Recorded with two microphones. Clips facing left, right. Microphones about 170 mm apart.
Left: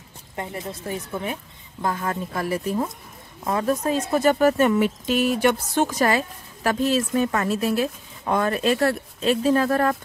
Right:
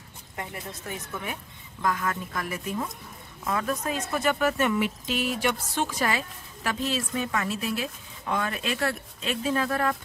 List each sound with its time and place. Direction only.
0.4 s speech: 30° left (ahead or behind)